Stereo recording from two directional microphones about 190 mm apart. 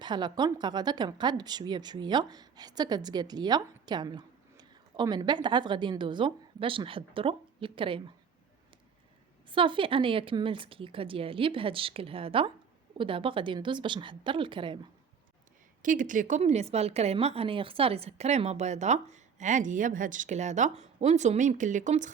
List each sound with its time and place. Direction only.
0.0 s a woman's voice: 25° right (ahead or behind)
9.5 s a woman's voice: 25° right (ahead or behind)
15.8 s speech: 45° right (ahead or behind)